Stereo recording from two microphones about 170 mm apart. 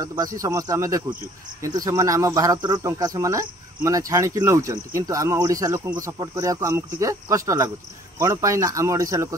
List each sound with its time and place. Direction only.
0.0 s speech: 20° right (ahead or behind)